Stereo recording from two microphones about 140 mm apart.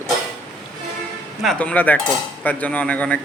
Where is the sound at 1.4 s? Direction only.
5° left (ahead or behind).